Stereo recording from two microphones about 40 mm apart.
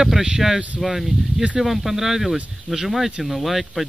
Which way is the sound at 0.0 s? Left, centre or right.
Centre.